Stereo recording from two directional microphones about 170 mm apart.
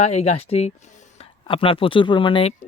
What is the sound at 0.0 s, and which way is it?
Speech, 40° left (ahead or behind).